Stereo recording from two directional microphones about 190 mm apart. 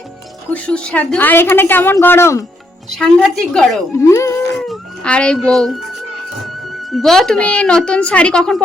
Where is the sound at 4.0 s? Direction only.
15° left (ahead or behind).